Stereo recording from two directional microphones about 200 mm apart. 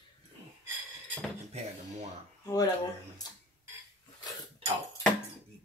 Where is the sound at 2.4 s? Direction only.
20° left (ahead or behind).